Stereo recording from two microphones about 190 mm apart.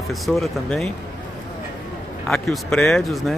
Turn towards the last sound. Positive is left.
turn(degrees=0)  # may be behind; listen again after turning